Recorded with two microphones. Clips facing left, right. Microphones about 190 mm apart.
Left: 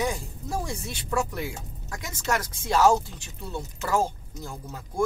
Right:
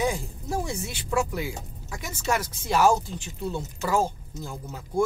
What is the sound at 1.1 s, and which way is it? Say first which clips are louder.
Speech: right 2 dB; 10° right (ahead or behind).